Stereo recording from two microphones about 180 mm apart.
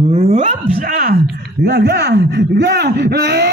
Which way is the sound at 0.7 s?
55° right (ahead or behind).